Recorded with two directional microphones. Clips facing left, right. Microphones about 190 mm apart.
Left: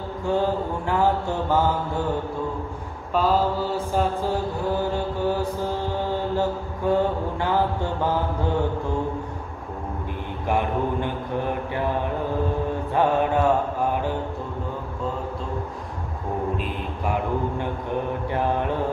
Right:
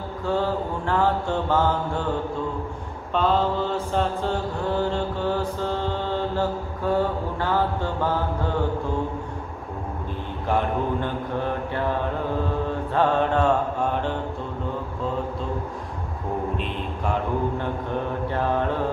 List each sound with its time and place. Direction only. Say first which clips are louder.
0.3 s mantra: left 1 dB; 15° left (ahead or behind)
3.2 s mantra: even; 5° left (ahead or behind)
10.5 s mantra: even; 15° left (ahead or behind)
12.9 s mantra: even; 15° left (ahead or behind)